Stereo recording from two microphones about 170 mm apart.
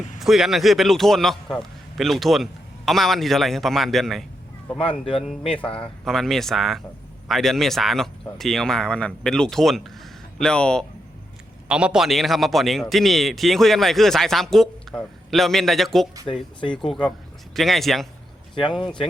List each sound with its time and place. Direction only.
0.2 s a man's voice: centre (ahead or behind)
4.8 s speech: 30° left (ahead or behind)
5.8 s a man's voice: centre (ahead or behind)
11.7 s a man's voice: 5° right (ahead or behind)
16.2 s speech: 30° left (ahead or behind)
16.7 s a man's voice: centre (ahead or behind)